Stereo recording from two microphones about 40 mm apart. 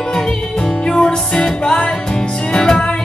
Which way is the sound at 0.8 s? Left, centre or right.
Centre.